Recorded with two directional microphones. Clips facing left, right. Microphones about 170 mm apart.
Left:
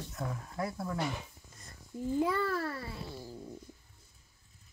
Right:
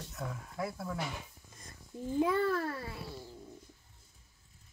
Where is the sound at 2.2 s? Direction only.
20° right (ahead or behind).